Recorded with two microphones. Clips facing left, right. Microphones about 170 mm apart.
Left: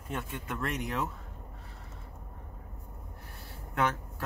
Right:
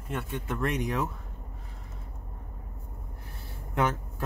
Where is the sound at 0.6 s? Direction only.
15° right (ahead or behind).